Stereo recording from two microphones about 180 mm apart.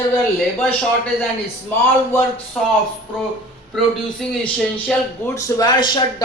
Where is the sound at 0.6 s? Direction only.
5° left (ahead or behind).